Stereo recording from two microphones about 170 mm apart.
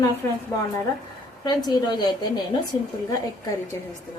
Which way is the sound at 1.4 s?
25° left (ahead or behind).